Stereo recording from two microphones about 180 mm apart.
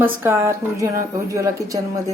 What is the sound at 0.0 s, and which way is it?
Speech, 10° right (ahead or behind).